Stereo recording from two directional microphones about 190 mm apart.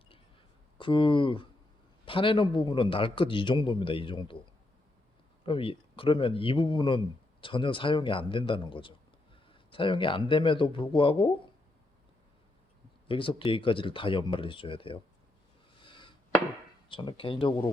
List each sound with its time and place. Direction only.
0.8 s a man's voice: 25° left (ahead or behind)
13.1 s a man's voice: 25° left (ahead or behind)
15.8 s a sound: 25° left (ahead or behind)
16.9 s a man's voice: 25° left (ahead or behind)